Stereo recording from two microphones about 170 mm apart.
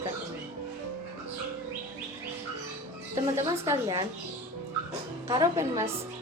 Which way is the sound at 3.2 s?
20° right (ahead or behind).